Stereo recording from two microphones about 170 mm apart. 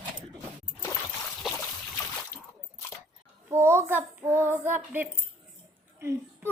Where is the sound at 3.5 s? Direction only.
15° right (ahead or behind).